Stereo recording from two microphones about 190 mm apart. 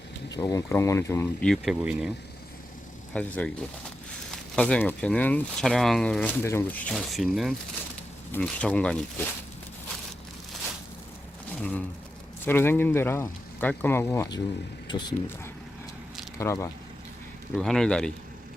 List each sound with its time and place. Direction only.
0.3 s speech: 20° left (ahead or behind)
1.5 s speech: 5° right (ahead or behind)
3.1 s speech: 5° left (ahead or behind)
4.5 s speech: 5° left (ahead or behind)
6.9 s speech: centre (ahead or behind)
11.5 s speech: 10° left (ahead or behind); by 15.0 s 25° left (ahead or behind)
16.4 s speech: 15° left (ahead or behind)
17.5 s speech: 5° left (ahead or behind)